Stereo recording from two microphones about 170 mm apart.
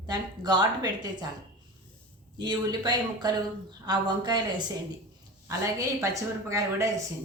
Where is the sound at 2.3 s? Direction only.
25° right (ahead or behind).